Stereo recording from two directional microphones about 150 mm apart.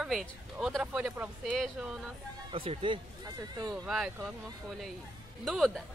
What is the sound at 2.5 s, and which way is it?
Speech, 35° right (ahead or behind).